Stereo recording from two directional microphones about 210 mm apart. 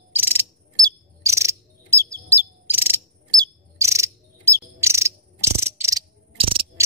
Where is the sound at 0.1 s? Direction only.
10° right (ahead or behind).